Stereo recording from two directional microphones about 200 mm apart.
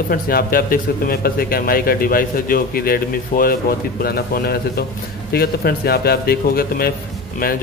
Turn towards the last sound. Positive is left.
turn(degrees=45)  # may be behind; listen again after turning